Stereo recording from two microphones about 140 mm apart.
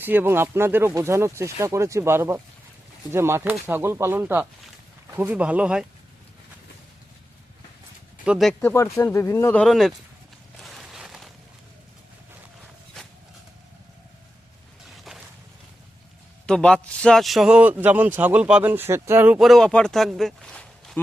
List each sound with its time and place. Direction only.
0.0 s a man's voice: 15° right (ahead or behind)
8.2 s speech: 5° right (ahead or behind)
8.6 s speech: 20° left (ahead or behind); by 9.9 s centre (ahead or behind)
10.6 s a sound: centre (ahead or behind)
14.8 s a sound: centre (ahead or behind)
16.5 s a man's voice: 5° left (ahead or behind); by 19.4 s 15° right (ahead or behind)
19.4 s speech: centre (ahead or behind)